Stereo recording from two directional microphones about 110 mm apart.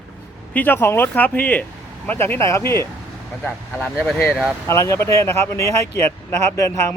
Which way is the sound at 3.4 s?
10° left (ahead or behind).